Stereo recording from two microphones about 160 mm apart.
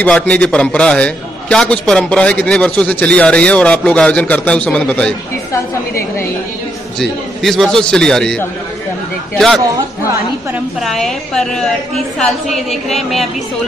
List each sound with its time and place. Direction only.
0.0 s a man's voice: 5° left (ahead or behind)
5.5 s a man's voice: 15° left (ahead or behind)
7.0 s a woman's voice: centre (ahead or behind)
10.8 s a woman's voice: centre (ahead or behind)